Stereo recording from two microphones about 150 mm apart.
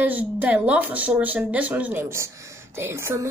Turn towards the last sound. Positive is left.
turn(degrees=-20)  # may be behind; listen again after turning